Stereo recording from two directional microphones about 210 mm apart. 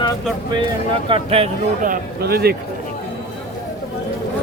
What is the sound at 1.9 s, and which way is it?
Speech, 50° right (ahead or behind).